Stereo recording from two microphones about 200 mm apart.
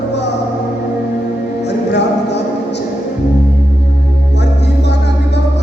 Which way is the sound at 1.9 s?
60° left (ahead or behind).